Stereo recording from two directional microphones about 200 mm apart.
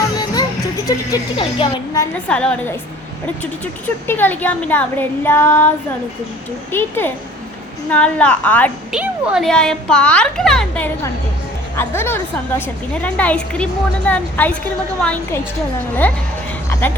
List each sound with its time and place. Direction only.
0.9 s a woman's voice: 20° left (ahead or behind)
2.1 s a woman's voice: 5° left (ahead or behind)
8.9 s a child's voice: 5° right (ahead or behind)